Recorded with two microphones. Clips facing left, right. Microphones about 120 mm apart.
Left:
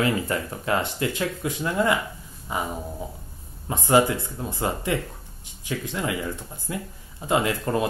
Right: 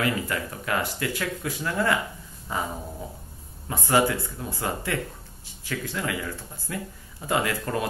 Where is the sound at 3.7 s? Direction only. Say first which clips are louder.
Left 3 dB; 20° left (ahead or behind).